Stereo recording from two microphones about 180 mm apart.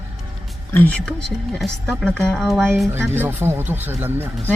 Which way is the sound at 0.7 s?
10° left (ahead or behind).